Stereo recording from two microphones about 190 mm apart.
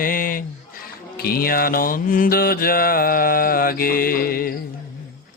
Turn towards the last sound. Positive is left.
turn(degrees=50)  # may be behind; listen again after turning